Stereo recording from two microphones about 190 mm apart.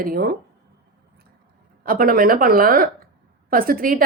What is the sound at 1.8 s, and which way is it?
A woman's voice, 50° right (ahead or behind).